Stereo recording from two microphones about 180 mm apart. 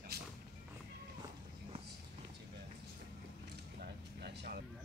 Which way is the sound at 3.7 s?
65° right (ahead or behind).